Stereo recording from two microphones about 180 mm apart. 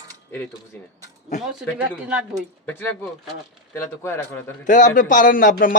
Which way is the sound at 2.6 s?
10° left (ahead or behind).